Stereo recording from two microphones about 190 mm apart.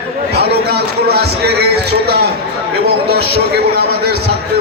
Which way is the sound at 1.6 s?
55° right (ahead or behind).